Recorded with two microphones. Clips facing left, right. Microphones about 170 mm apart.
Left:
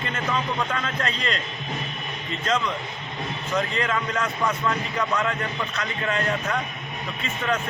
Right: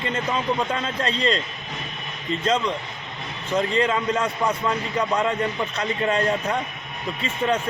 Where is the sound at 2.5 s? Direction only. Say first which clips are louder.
Right 2 dB; 30° right (ahead or behind).